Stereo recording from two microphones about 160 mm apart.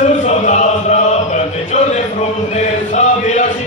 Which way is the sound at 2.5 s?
45° left (ahead or behind).